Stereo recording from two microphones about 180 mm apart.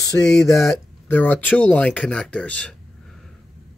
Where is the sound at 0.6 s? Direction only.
10° left (ahead or behind).